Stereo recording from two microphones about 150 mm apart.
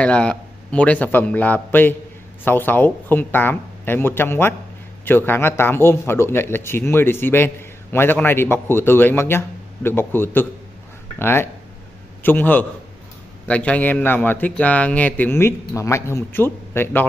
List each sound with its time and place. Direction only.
0.0 s a man's voice: 5° left (ahead or behind)